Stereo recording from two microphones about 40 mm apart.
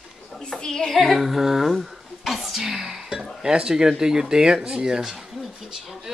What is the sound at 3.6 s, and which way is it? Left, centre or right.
Speech, centre.